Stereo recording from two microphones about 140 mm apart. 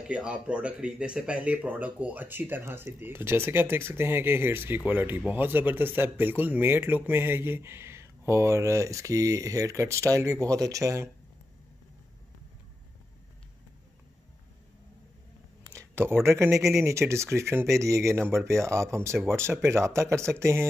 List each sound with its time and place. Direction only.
0.0 s speech: 5° right (ahead or behind); by 11.1 s 25° right (ahead or behind)
15.6 s a sound: 20° right (ahead or behind)
16.0 s speech: 15° right (ahead or behind)